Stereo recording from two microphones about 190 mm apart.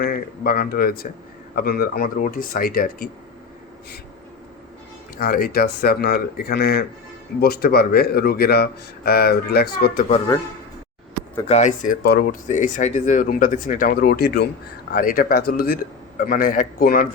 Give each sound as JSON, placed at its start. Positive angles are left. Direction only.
{"t": 0.0, "sound": "a man's voice", "side_deg": 50}
{"t": 5.1, "sound": "a man's voice", "side_deg": 50}
{"t": 11.4, "sound": "speech", "side_deg": 40}
{"t": 12.0, "sound": "speech", "side_deg": 60}
{"t": 12.5, "sound": "a man's voice", "side_deg": 40}
{"t": 14.9, "sound": "a man's voice", "side_deg": 45}